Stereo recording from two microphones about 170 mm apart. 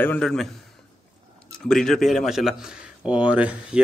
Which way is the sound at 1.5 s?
5° left (ahead or behind).